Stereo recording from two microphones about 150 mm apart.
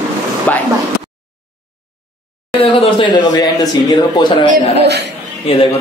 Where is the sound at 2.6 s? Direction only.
35° left (ahead or behind).